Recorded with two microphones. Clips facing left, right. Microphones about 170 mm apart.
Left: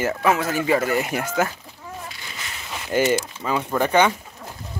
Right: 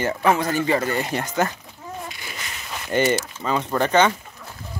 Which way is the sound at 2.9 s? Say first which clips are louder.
Even; 5° left (ahead or behind).